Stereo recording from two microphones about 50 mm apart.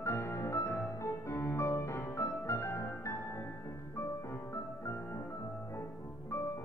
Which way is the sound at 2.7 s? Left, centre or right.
Left.